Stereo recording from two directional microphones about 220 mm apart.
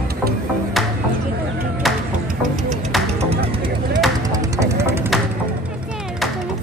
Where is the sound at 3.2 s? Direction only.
25° right (ahead or behind).